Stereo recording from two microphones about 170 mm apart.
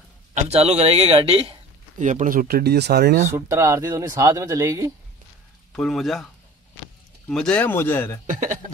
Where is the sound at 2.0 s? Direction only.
45° right (ahead or behind); by 3.2 s 70° right (ahead or behind).